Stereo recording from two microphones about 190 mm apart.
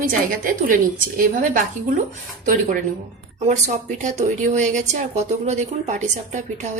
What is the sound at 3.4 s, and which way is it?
Speech, 40° right (ahead or behind).